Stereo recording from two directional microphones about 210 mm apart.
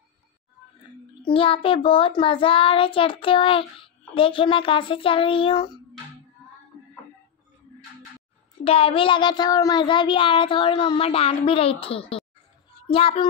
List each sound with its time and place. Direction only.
1.2 s child singing: 25° left (ahead or behind)
8.6 s child singing: 25° left (ahead or behind)